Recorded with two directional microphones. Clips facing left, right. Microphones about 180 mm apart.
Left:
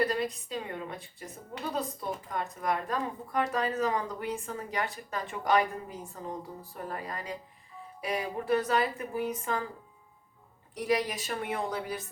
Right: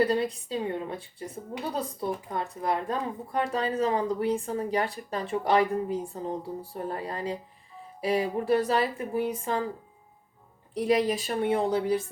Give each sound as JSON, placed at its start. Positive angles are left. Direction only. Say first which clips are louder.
{"t": 0.1, "sound": "speech", "louder": "right 5 dB", "side_deg": -30}
{"t": 10.8, "sound": "speech", "louder": "right 5 dB", "side_deg": -30}